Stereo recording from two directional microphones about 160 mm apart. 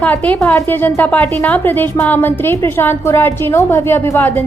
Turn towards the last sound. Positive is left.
turn(degrees=10)  # may be behind; listen again after turning